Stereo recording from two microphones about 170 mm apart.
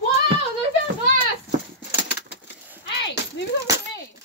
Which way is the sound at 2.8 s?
90° left.